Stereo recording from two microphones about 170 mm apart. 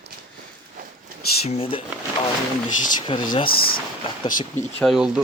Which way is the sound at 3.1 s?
30° left (ahead or behind).